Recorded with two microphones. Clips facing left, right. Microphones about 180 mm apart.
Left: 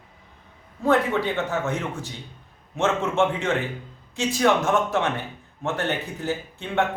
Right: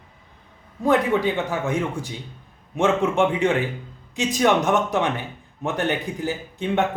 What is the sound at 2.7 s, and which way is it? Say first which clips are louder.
Speech: right 3 dB; 15° right (ahead or behind).